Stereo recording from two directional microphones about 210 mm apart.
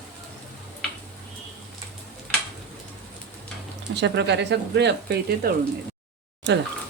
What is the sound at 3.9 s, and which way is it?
Speech, 55° right (ahead or behind).